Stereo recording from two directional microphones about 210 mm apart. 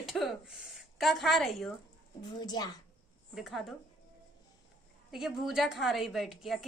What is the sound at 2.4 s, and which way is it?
Speech, 20° left (ahead or behind).